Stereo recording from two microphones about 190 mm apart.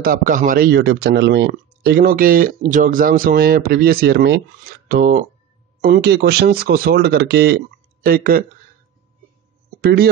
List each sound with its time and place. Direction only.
0.0 s speech: 50° right (ahead or behind)
5.9 s speech: 60° right (ahead or behind)
9.8 s speech: 55° right (ahead or behind)